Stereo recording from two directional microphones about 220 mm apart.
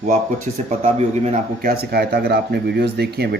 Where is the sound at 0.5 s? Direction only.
35° right (ahead or behind).